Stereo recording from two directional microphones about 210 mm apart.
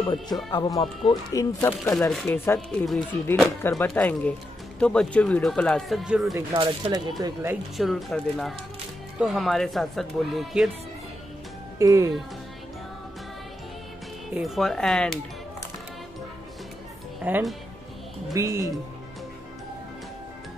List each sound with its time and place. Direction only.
0.0 s speech: 20° left (ahead or behind)
2.0 s speech: centre (ahead or behind)
6.3 s speech: 20° right (ahead or behind)
7.7 s speech: centre (ahead or behind)
11.8 s speech: 15° right (ahead or behind)
14.3 s speech: centre (ahead or behind)
17.2 s speech: 10° right (ahead or behind)